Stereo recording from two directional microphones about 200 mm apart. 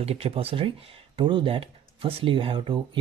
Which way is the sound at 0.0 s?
30° right (ahead or behind).